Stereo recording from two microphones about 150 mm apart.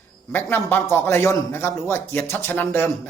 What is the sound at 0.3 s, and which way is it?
Speech, 15° left (ahead or behind).